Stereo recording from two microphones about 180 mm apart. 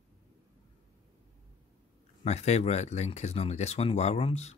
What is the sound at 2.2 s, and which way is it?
Speech, 35° left (ahead or behind).